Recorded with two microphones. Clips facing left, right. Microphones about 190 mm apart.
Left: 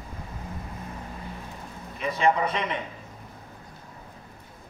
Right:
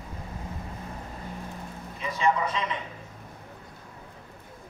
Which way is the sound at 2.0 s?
60° left (ahead or behind).